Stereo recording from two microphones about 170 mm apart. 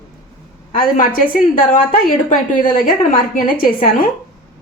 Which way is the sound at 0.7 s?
55° left (ahead or behind).